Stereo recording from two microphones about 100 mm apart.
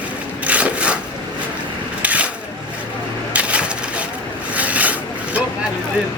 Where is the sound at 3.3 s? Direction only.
10° right (ahead or behind).